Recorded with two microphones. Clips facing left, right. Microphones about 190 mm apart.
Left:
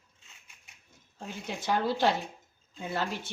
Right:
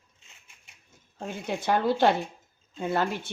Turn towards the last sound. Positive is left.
turn(degrees=-55)  # may be behind; listen again after turning